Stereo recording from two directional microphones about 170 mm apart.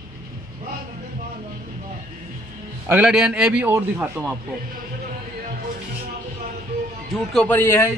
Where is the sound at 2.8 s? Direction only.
5° right (ahead or behind).